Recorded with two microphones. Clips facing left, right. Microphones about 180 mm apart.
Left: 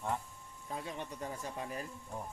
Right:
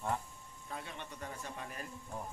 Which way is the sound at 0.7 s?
35° left (ahead or behind).